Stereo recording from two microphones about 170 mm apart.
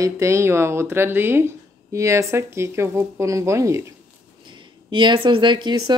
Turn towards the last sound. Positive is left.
turn(degrees=-25)  # may be behind; listen again after turning